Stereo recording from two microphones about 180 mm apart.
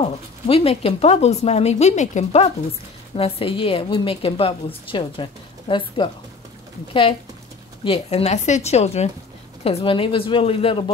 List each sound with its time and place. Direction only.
0.0 s a woman's voice: 35° left (ahead or behind)